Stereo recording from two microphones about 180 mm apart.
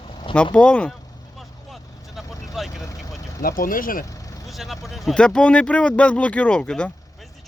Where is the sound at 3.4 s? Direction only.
50° left (ahead or behind).